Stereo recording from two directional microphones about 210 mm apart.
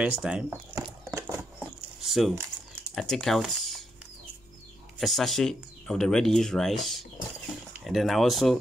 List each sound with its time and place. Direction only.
0.0 s speech: 5° right (ahead or behind)
0.8 s a sound: 15° right (ahead or behind)
2.0 s coin: centre (ahead or behind)
2.9 s speech: centre (ahead or behind)
4.9 s speech: centre (ahead or behind)